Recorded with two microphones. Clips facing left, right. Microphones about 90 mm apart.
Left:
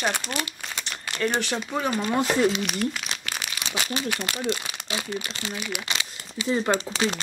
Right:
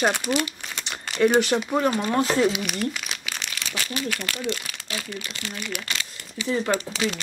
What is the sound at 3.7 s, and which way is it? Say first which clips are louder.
Speech: left 1 dB; 20° left (ahead or behind).